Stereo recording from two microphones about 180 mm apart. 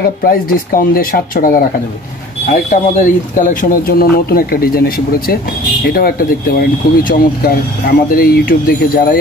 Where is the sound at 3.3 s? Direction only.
45° left (ahead or behind).